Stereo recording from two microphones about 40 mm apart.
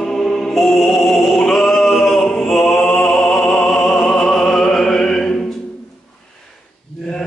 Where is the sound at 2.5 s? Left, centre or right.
Centre.